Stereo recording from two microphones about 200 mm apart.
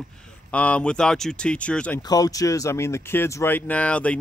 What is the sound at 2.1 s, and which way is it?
Speech, 20° left (ahead or behind).